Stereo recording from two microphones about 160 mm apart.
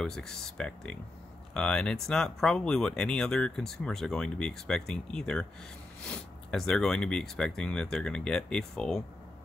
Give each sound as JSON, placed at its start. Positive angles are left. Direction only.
{"t": 0.0, "sound": "speech", "side_deg": 5}